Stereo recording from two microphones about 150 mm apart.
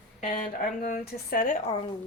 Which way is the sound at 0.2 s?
60° left (ahead or behind).